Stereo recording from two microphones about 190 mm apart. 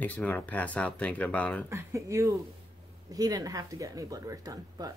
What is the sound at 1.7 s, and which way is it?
Speech, 15° right (ahead or behind).